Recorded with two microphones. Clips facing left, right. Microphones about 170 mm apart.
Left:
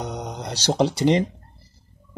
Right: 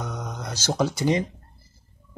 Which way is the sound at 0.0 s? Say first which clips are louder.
Left 3 dB; 35° left (ahead or behind).